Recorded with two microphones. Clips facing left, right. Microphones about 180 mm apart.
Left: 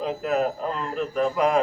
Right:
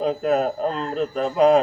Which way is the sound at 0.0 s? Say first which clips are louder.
Right 4 dB; 35° right (ahead or behind).